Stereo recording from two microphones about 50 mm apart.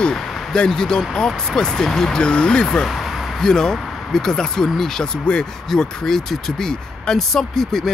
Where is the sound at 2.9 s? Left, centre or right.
Centre.